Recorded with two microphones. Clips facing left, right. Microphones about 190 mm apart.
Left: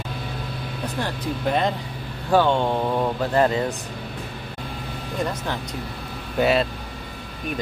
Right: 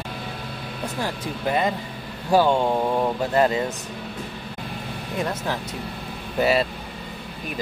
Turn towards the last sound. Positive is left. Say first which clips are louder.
# left 1 dB
turn(degrees=0)  # may be behind; listen again after turning